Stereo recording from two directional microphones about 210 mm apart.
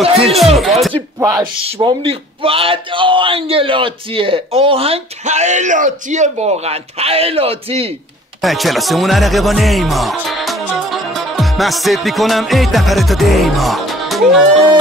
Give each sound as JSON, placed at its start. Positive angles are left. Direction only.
{"t": 0.0, "sound": "a sound", "side_deg": -30}
{"t": 0.6, "sound": "speech", "side_deg": 0}
{"t": 0.9, "sound": "speech", "side_deg": -20}
{"t": 8.4, "sound": "speech", "side_deg": 0}